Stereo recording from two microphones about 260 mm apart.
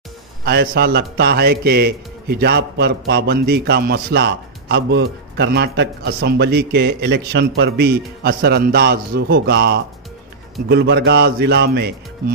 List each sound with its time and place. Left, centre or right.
0.5 s a man's voice: right